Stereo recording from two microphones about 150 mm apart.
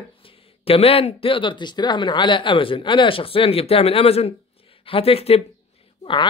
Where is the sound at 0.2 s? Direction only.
40° left (ahead or behind).